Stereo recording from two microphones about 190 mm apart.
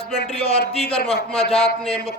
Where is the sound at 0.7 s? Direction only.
30° left (ahead or behind).